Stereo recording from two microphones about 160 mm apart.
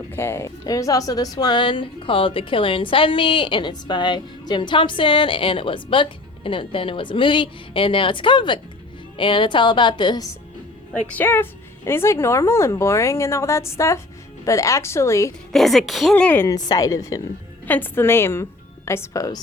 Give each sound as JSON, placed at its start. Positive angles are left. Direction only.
{"t": 0.1, "sound": "speech", "side_deg": 15}
{"t": 11.2, "sound": "a woman's voice", "side_deg": 15}
{"t": 15.5, "sound": "a woman's voice", "side_deg": 0}
{"t": 16.6, "sound": "a woman's voice", "side_deg": 25}